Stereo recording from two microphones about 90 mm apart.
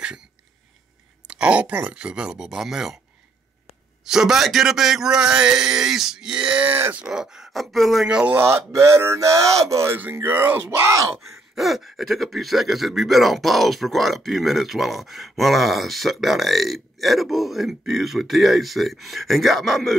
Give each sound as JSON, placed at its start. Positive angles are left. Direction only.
{"t": 1.2, "sound": "speech", "side_deg": -10}
{"t": 4.0, "sound": "speech", "side_deg": -5}
{"t": 6.7, "sound": "speech", "side_deg": -20}
{"t": 7.0, "sound": "speech", "side_deg": -10}
{"t": 8.4, "sound": "speech", "side_deg": -30}
{"t": 11.5, "sound": "speech", "side_deg": 0}